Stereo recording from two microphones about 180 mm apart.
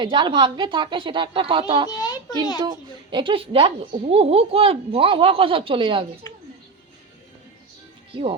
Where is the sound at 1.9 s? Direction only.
20° left (ahead or behind).